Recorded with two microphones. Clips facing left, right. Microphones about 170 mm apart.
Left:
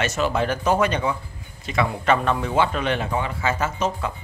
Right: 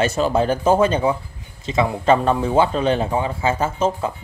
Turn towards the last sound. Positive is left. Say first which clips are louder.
# right 4 dB
turn(degrees=-30)  # may be behind; listen again after turning